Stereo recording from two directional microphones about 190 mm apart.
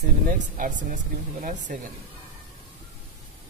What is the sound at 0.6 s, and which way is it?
A woman's voice, 45° right (ahead or behind).